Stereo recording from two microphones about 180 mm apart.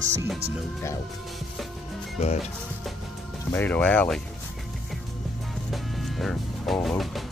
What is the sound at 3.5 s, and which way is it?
Speech, 10° left (ahead or behind).